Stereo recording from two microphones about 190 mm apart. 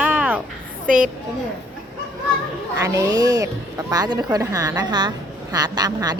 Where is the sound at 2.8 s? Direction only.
15° right (ahead or behind).